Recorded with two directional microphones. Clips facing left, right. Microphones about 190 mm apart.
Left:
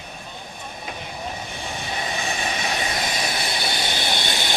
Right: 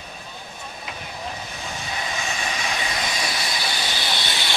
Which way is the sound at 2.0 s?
35° left (ahead or behind).